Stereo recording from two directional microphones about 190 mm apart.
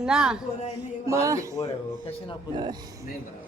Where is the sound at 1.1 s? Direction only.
15° right (ahead or behind).